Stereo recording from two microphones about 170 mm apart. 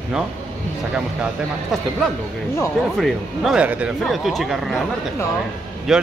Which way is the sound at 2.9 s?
Centre (ahead or behind).